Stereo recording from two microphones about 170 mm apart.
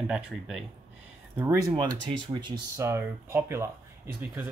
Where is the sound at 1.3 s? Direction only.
20° right (ahead or behind).